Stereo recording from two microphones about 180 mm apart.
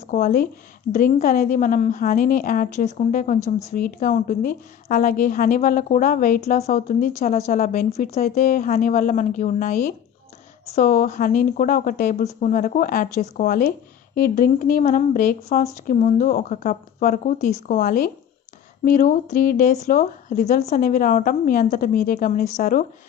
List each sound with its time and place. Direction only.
0.1 s speech: 50° left (ahead or behind)
7.9 s speech: 35° left (ahead or behind); by 22.8 s 50° left (ahead or behind)